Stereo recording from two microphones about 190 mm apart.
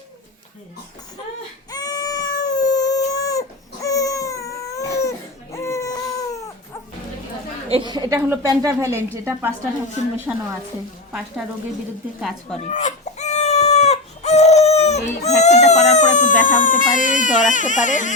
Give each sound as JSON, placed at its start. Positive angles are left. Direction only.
{"t": 1.7, "sound": "cat", "side_deg": 20}
{"t": 7.7, "sound": "a woman's voice", "side_deg": -20}
{"t": 12.5, "sound": "chicken", "side_deg": 35}
{"t": 15.2, "sound": "speech", "side_deg": 35}